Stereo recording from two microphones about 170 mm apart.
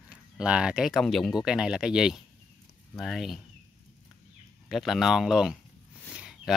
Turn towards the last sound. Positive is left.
turn(degrees=-5)  # may be behind; listen again after turning